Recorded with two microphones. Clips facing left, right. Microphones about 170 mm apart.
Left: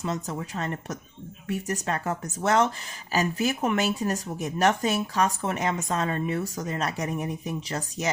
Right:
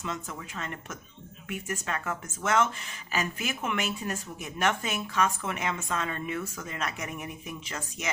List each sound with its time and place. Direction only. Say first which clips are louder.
0.0 s speech: left 6 dB; 40° left (ahead or behind)